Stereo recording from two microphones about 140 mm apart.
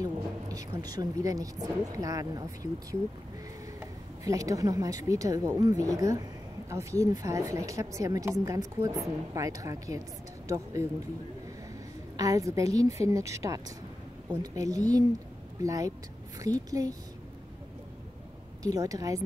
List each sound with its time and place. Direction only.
0.0 s a woman's voice: 25° right (ahead or behind)
12.2 s a woman's voice: 25° right (ahead or behind)
18.6 s a woman's voice: 25° right (ahead or behind)